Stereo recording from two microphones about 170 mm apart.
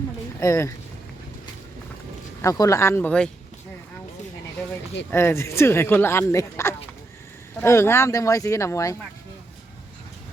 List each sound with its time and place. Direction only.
0.3 s speech: 15° left (ahead or behind)
2.4 s speech: 20° left (ahead or behind)
5.1 s speech: 15° left (ahead or behind)